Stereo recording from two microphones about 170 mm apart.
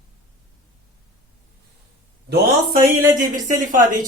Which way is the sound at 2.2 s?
70° right (ahead or behind).